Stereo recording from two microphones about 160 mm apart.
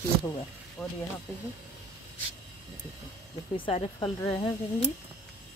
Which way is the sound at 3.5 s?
35° left (ahead or behind).